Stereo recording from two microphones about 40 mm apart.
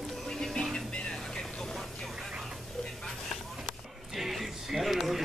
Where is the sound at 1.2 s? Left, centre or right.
Centre.